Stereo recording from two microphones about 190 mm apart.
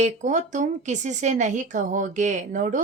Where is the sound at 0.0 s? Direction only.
40° right (ahead or behind).